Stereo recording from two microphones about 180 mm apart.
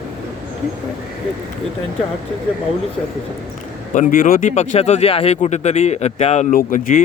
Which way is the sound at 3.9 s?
45° left (ahead or behind).